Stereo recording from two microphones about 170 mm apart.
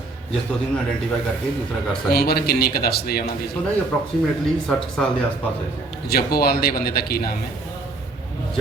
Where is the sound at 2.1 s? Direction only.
65° left (ahead or behind).